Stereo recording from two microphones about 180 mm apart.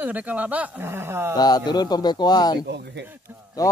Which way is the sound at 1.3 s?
20° left (ahead or behind).